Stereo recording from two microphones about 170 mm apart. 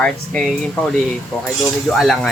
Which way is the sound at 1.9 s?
Centre (ahead or behind).